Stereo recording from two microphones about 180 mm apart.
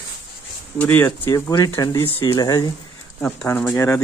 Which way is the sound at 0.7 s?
10° left (ahead or behind).